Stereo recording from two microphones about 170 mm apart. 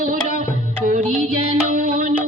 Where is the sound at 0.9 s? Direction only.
50° right (ahead or behind).